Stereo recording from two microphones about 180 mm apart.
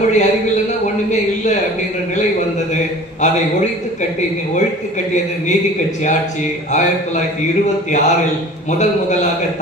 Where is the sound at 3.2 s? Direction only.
40° left (ahead or behind).